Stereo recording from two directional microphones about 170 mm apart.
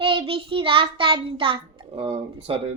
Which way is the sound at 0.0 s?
30° right (ahead or behind).